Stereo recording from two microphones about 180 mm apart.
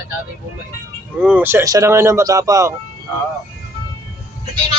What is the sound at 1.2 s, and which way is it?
Speech, 10° right (ahead or behind).